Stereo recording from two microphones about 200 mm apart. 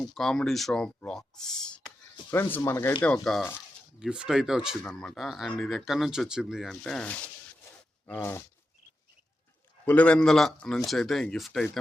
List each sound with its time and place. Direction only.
0.0 s speech: centre (ahead or behind)
8.0 s a sound: 10° left (ahead or behind)
9.8 s speech: 5° left (ahead or behind)